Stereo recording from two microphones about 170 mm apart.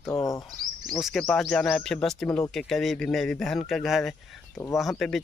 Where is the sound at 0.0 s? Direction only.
15° left (ahead or behind).